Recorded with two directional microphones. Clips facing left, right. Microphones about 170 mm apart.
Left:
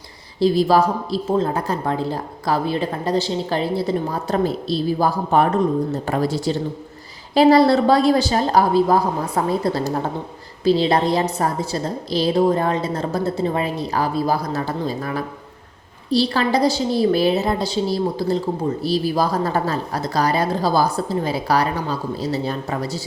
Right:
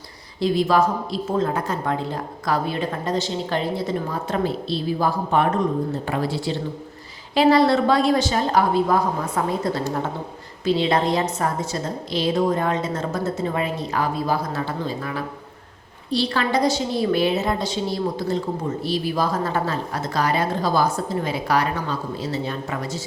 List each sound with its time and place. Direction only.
0.3 s a woman's voice: 35° left (ahead or behind)